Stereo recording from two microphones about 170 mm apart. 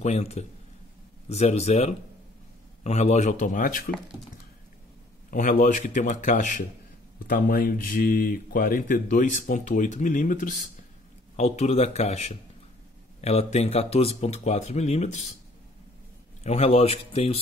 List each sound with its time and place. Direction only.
0.0 s speech: 40° left (ahead or behind)
5.3 s speech: 50° left (ahead or behind)
16.4 s speech: 35° left (ahead or behind)